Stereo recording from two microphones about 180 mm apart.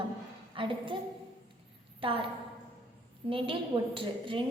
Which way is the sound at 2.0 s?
30° right (ahead or behind).